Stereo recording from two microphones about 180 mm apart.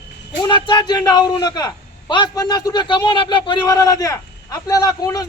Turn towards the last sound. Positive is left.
turn(degrees=20)  # may be behind; listen again after turning